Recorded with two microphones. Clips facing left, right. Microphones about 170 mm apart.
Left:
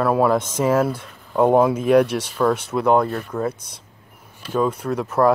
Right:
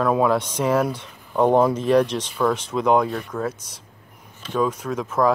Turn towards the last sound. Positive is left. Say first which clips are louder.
# left 3 dB
turn(degrees=10)  # may be behind; listen again after turning